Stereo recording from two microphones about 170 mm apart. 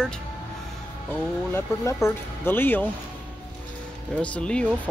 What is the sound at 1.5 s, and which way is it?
Speech, 15° left (ahead or behind).